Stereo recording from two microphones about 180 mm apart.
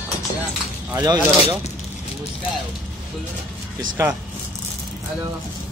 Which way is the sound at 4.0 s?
15° right (ahead or behind).